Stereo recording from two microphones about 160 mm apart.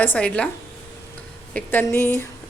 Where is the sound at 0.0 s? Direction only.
10° left (ahead or behind).